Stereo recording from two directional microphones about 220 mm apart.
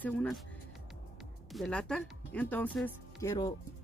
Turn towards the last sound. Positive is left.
turn(degrees=15)  # may be behind; listen again after turning